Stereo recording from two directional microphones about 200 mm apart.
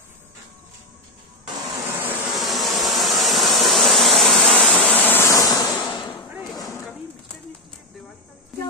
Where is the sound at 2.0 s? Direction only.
Centre (ahead or behind); by 6.9 s 15° left (ahead or behind).